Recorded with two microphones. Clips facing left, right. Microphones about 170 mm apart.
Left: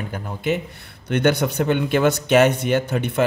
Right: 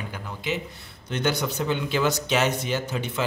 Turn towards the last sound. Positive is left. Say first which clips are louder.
# left 7 dB
turn(degrees=60)  # may be behind; listen again after turning